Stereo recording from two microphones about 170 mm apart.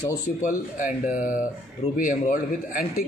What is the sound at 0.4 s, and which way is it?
Speech, 50° left (ahead or behind).